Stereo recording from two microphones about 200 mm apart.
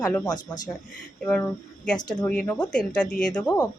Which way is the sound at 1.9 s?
20° left (ahead or behind).